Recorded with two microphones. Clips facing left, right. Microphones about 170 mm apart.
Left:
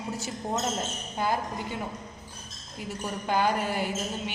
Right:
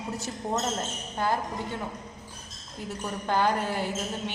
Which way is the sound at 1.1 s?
10° left (ahead or behind).